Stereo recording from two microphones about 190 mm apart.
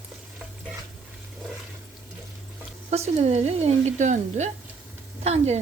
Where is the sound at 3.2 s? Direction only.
35° right (ahead or behind).